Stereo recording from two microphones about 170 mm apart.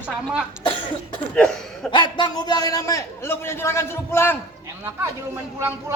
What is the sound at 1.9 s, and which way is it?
A man's voice, 25° left (ahead or behind).